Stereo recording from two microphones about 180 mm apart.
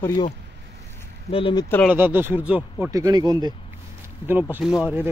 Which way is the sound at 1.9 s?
10° right (ahead or behind).